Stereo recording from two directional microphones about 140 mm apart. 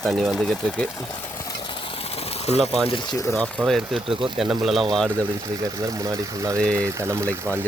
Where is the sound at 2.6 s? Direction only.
Centre (ahead or behind).